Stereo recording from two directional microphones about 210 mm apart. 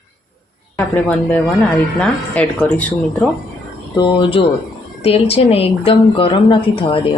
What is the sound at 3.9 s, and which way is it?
A woman's voice, 20° left (ahead or behind).